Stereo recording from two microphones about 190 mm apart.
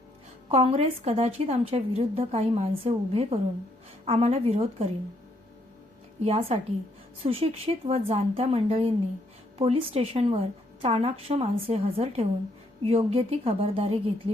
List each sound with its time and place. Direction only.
0.4 s a woman's voice: 30° right (ahead or behind)
6.2 s a woman's voice: 35° right (ahead or behind)